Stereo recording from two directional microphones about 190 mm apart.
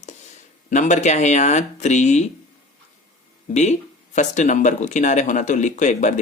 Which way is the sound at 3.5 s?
35° left (ahead or behind).